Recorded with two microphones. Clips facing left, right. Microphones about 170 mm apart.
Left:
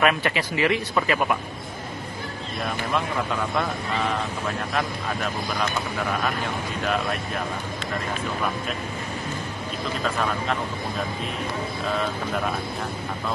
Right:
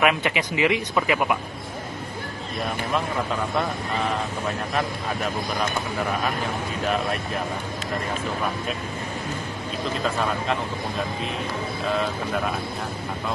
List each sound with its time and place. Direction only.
0.0 s speech: 15° right (ahead or behind)